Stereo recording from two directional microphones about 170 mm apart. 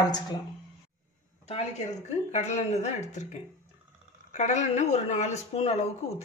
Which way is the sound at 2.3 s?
40° left (ahead or behind).